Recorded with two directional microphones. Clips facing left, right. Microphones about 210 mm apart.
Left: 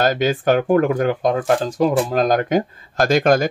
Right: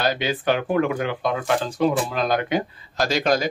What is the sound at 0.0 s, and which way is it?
Speech, 45° left (ahead or behind).